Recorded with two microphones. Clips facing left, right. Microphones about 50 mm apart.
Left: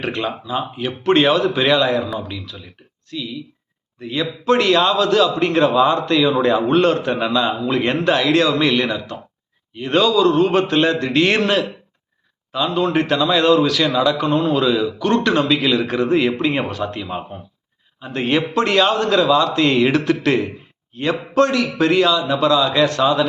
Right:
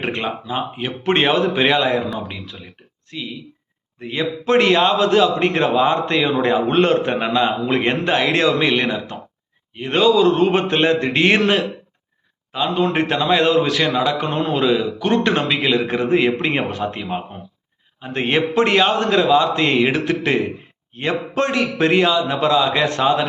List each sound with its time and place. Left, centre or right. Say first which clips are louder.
0.0 s a man's voice: even; right
14.6 s a man's voice: even; right